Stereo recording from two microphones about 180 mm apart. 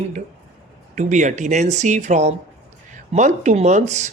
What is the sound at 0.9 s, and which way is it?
Speech, 40° right (ahead or behind).